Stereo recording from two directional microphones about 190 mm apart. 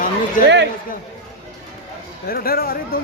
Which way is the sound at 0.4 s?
65° right (ahead or behind).